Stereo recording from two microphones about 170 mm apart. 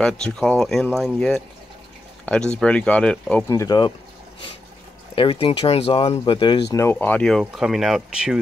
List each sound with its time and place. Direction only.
0.0 s speech: 5° left (ahead or behind)
3.4 s speech: 20° left (ahead or behind)
5.1 s speech: 30° left (ahead or behind)
6.7 s speech: 15° left (ahead or behind); by 8.4 s centre (ahead or behind)